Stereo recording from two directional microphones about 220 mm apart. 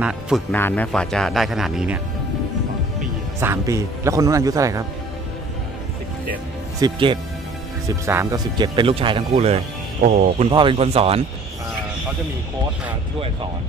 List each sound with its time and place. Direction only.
0.0 s speech: centre (ahead or behind)
3.3 s speech: 10° right (ahead or behind)
6.8 s speech: 20° right (ahead or behind)